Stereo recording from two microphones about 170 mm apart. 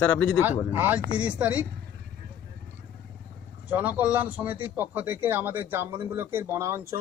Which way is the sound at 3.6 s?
10° right (ahead or behind).